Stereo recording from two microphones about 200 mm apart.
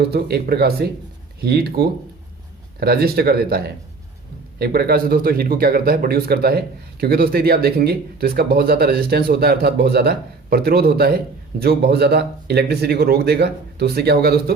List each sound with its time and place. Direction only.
0.1 s speech: 55° right (ahead or behind)